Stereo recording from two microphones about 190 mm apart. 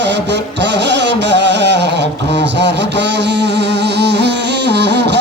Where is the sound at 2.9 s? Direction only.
65° right (ahead or behind).